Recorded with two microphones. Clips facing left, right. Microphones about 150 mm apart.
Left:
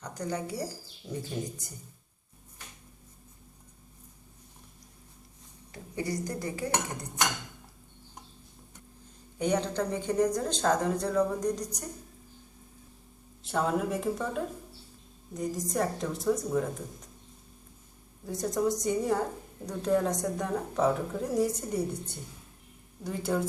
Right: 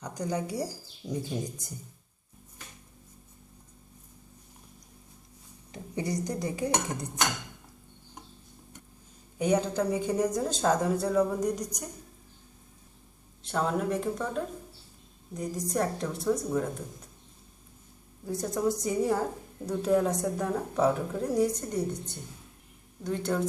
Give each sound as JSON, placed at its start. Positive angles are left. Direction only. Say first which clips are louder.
{"t": 0.0, "sound": "speech", "louder": "right 2 dB", "side_deg": -10}
{"t": 5.7, "sound": "speech", "louder": "right 1 dB", "side_deg": -20}
{"t": 9.4, "sound": "speech", "louder": "right 2 dB", "side_deg": -10}
{"t": 13.4, "sound": "a woman's voice", "louder": "even", "side_deg": 5}
{"t": 18.3, "sound": "a woman's voice", "louder": "even", "side_deg": 0}